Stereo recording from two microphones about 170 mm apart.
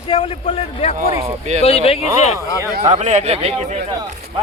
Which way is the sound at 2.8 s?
45° right (ahead or behind).